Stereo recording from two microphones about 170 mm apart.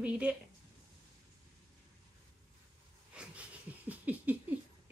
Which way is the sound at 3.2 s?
10° right (ahead or behind).